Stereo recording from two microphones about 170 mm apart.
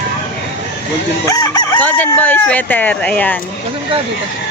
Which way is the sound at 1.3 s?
25° left (ahead or behind).